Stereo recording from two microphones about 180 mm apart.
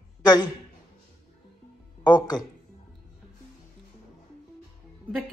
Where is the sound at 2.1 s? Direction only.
25° left (ahead or behind).